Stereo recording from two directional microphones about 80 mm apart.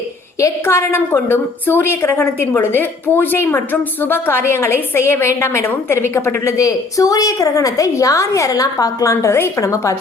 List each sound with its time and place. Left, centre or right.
0.3 s a woman's voice: left
6.7 s a woman's voice: left